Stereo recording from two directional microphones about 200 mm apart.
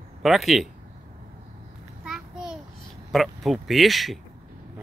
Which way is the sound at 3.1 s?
Centre (ahead or behind).